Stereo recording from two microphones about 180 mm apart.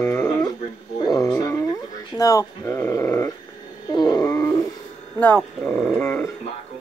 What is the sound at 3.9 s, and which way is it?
Grunt, 25° left (ahead or behind).